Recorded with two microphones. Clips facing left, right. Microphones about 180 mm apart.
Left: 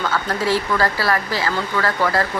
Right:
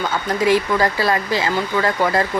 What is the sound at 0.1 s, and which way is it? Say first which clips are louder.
Speech: right 6 dB; 15° right (ahead or behind).